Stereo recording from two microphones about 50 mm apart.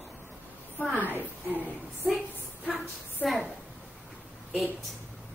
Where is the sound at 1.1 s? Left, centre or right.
Right.